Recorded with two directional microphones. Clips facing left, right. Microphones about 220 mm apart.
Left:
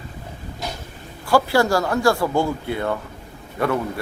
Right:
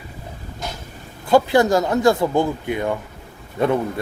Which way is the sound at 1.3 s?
20° right (ahead or behind).